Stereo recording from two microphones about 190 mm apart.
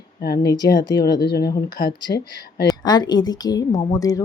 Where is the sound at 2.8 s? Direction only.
20° left (ahead or behind).